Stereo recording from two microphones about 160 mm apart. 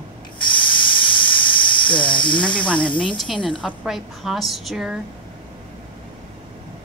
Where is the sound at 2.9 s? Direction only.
30° left (ahead or behind).